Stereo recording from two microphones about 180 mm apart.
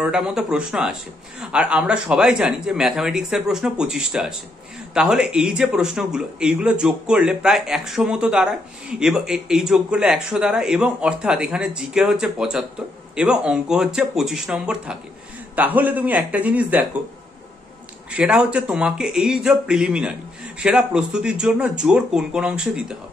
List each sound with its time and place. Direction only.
0.0 s a man's voice: 5° right (ahead or behind)
18.1 s a man's voice: 5° right (ahead or behind)